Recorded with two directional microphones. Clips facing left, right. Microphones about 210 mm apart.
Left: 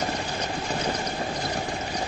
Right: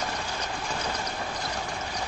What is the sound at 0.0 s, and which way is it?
Vehicle, 25° left (ahead or behind).